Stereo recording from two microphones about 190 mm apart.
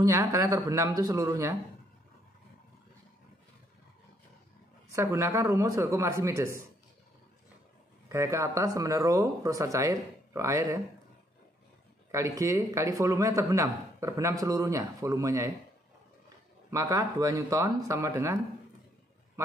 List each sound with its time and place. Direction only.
0.0 s speech: 15° right (ahead or behind)
4.9 s speech: 15° right (ahead or behind)
8.1 s speech: 15° right (ahead or behind)
12.1 s speech: 15° right (ahead or behind)
16.7 s speech: 15° right (ahead or behind)